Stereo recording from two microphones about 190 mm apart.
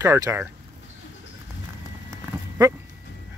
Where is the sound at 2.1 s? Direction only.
15° right (ahead or behind).